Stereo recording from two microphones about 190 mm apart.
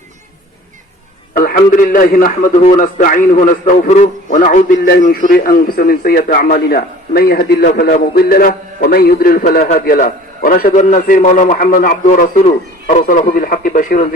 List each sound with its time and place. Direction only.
1.3 s a man's voice: 45° left (ahead or behind)